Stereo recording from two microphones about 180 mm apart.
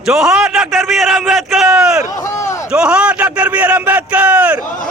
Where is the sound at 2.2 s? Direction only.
15° left (ahead or behind).